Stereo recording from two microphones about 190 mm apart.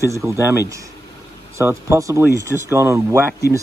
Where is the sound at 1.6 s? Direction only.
15° right (ahead or behind).